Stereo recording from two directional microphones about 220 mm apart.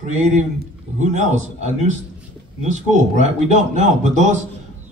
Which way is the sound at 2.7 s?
35° right (ahead or behind).